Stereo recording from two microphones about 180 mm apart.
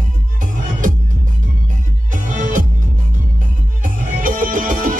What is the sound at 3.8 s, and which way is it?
Music, 45° right (ahead or behind).